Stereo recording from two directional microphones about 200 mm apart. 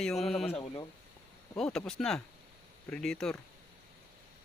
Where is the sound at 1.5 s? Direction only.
5° left (ahead or behind).